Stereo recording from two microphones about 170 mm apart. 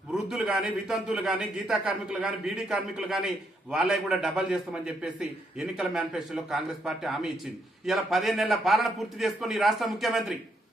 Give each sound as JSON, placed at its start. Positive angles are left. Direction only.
{"t": 0.1, "sound": "a man's voice", "side_deg": -5}